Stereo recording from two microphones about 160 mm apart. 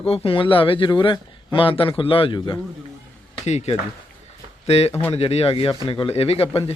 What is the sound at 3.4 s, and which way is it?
A man's voice, 45° left (ahead or behind).